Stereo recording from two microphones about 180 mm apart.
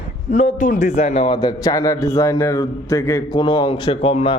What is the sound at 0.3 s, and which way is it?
A man's voice, 40° left (ahead or behind).